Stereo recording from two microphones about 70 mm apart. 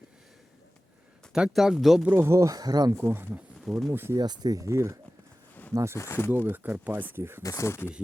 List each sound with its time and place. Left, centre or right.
1.3 s speech: centre
2.0 s speech: right
2.5 s speech: right
3.0 s speech: right
3.6 s speech: centre
3.9 s speech: right
4.2 s speech: right
4.5 s speech: right
6.0 s speech: left
6.3 s speech: right
7.4 s speech: left